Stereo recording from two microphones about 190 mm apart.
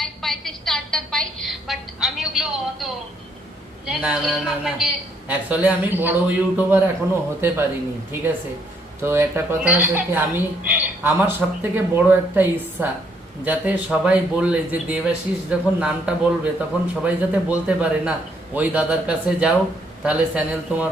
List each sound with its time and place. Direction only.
0.0 s a sound: centre (ahead or behind)
3.8 s speech: 5° right (ahead or behind)
9.0 s speech: 15° right (ahead or behind)